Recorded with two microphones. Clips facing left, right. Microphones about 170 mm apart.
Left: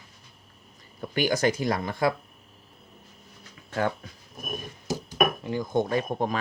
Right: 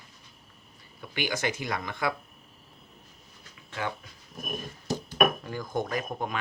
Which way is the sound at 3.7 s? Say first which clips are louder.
Left 7 dB; 45° left (ahead or behind).